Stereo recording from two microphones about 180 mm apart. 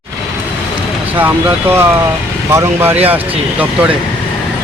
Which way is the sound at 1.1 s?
10° right (ahead or behind).